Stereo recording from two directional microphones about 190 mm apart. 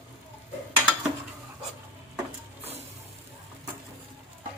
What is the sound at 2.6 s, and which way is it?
Music, 35° right (ahead or behind).